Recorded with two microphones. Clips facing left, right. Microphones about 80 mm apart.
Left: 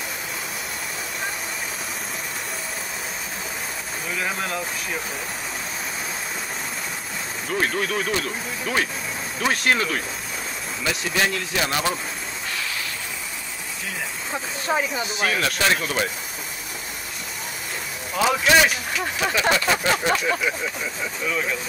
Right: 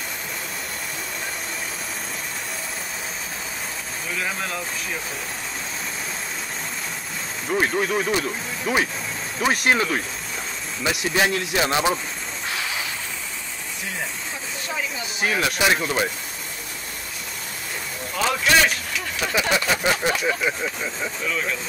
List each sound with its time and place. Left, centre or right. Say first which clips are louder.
4.1 s speech: left 1 dB; centre
7.4 s speech: right 2 dB; centre
14.7 s speech: left 7 dB; left
15.1 s speech: right 2 dB; centre
18.1 s speech: left 2 dB; centre
19.5 s speech: even; centre
21.3 s speech: left 2 dB; centre